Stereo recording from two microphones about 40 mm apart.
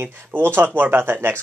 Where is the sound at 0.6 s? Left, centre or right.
Right.